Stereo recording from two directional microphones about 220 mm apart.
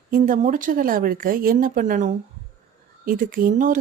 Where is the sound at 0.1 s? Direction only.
35° right (ahead or behind).